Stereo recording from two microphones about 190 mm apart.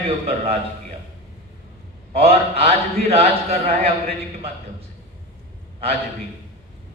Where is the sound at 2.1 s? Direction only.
35° right (ahead or behind).